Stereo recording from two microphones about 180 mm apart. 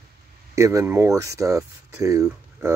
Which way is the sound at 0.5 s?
15° right (ahead or behind).